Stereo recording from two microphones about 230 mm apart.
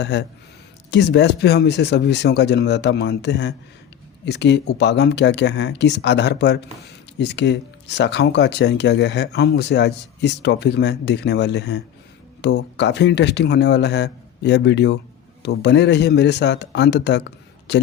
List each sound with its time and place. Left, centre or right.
0.0 s speech: left